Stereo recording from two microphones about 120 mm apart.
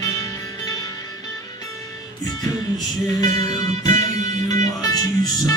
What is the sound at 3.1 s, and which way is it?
Music, 35° left (ahead or behind).